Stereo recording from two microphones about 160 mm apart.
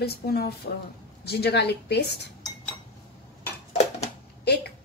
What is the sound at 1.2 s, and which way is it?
Speech, 90° left.